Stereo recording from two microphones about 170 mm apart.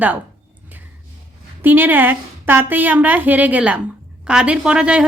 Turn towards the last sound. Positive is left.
turn(degrees=-5)  # may be behind; listen again after turning